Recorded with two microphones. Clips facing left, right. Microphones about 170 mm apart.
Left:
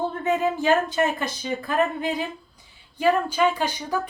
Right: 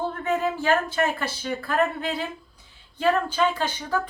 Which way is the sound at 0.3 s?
20° left (ahead or behind).